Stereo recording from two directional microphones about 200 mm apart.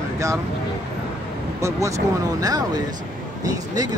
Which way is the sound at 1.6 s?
15° right (ahead or behind).